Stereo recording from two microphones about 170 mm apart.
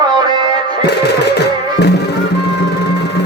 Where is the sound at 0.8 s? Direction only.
80° left.